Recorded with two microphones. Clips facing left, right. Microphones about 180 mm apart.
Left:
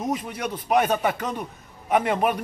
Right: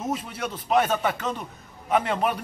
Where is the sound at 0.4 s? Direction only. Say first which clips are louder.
Left 1 dB; 10° left (ahead or behind).